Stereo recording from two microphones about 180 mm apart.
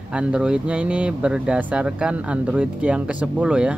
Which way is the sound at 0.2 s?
5° right (ahead or behind).